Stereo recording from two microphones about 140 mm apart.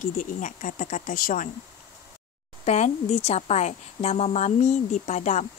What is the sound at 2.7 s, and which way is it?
A woman's voice, 50° left (ahead or behind).